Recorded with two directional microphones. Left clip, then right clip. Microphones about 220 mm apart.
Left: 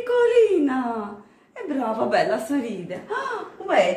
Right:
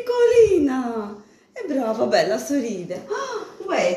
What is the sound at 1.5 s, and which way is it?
A woman's voice, 5° left (ahead or behind).